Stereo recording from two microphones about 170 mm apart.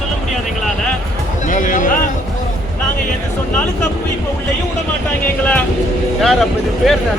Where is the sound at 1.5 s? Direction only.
50° left (ahead or behind).